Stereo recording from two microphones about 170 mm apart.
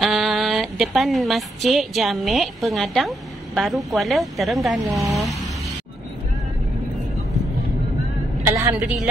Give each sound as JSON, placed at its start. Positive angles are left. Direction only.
{"t": 0.0, "sound": "a woman's voice", "side_deg": 0}
{"t": 8.5, "sound": "vehicle", "side_deg": -20}
{"t": 8.7, "sound": "a woman's voice", "side_deg": 0}